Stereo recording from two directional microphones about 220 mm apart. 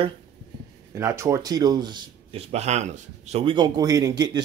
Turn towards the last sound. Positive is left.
turn(degrees=-15)  # may be behind; listen again after turning